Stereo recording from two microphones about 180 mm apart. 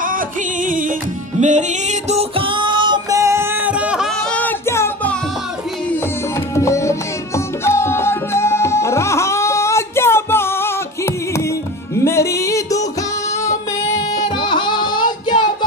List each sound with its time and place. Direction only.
0.0 s music: 50° right (ahead or behind); by 5.1 s 15° left (ahead or behind)
6.5 s music: 15° left (ahead or behind)
13.9 s music: 20° left (ahead or behind)